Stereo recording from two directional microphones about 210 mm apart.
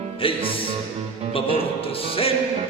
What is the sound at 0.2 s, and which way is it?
Music, 25° left (ahead or behind).